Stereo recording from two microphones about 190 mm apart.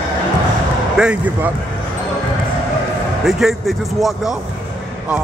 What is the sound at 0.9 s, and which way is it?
Speech, 5° right (ahead or behind).